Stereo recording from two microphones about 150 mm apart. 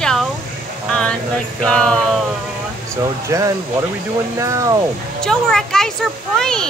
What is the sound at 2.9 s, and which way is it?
Speech, 20° right (ahead or behind).